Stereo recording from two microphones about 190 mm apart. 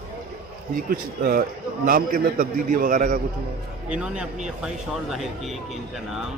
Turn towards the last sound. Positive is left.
turn(degrees=0)  # may be behind; listen again after turning